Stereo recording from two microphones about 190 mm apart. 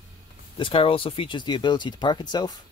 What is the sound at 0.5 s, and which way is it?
Speech, 25° left (ahead or behind).